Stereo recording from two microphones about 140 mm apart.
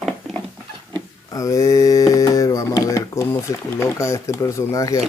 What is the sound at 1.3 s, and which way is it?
Mantra, 25° left (ahead or behind).